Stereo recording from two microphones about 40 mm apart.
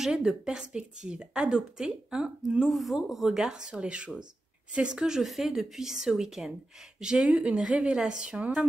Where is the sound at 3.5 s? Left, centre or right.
Centre.